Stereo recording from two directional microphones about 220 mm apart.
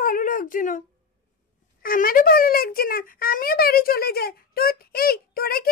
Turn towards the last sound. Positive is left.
turn(degrees=45)  # may be behind; listen again after turning